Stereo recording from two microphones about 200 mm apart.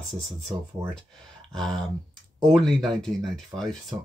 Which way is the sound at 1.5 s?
Centre (ahead or behind).